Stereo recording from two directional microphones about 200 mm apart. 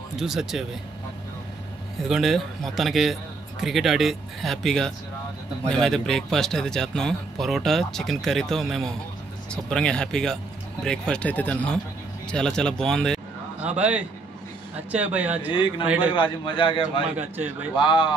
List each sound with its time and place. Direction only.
0.1 s speech: centre (ahead or behind)
2.0 s speech: centre (ahead or behind)
16.1 s a man's voice: 25° left (ahead or behind)